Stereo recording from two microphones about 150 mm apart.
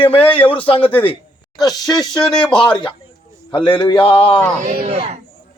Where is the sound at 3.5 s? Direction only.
30° left (ahead or behind).